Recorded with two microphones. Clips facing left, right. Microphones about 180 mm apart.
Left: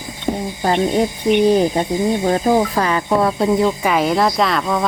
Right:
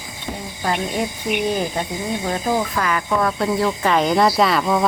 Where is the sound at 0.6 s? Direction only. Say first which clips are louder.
Left 5 dB; 30° left (ahead or behind).